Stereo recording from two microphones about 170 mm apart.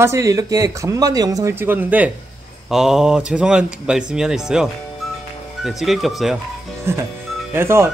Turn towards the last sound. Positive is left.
turn(degrees=-15)  # may be behind; listen again after turning